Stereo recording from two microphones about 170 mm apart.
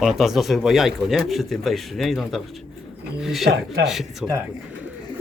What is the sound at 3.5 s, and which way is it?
Speech, 70° right (ahead or behind).